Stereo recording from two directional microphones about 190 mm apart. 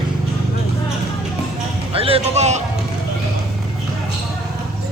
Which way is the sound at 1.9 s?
30° right (ahead or behind).